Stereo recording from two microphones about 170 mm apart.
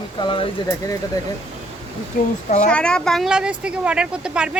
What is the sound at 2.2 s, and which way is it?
Speech, 60° left (ahead or behind).